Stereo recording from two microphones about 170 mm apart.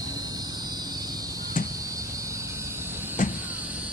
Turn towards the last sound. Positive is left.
turn(degrees=50)  # may be behind; listen again after turning